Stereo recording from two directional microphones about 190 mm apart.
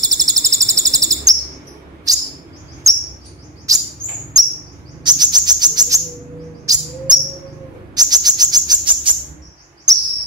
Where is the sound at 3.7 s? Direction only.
15° right (ahead or behind).